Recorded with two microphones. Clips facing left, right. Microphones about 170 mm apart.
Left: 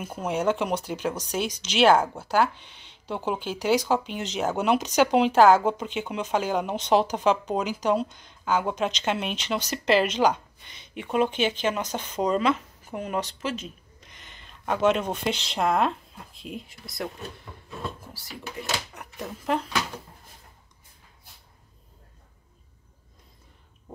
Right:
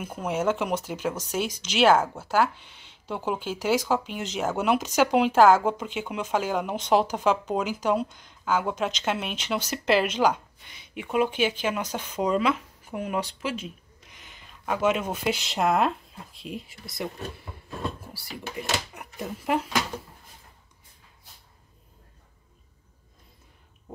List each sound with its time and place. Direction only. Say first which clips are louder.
0.2 s speech: left 1 dB; 5° right (ahead or behind)
1.5 s speech: even; 50° right (ahead or behind)
2.3 s speech: even; 5° right (ahead or behind)
18.9 s speech: right 1 dB; 10° right (ahead or behind)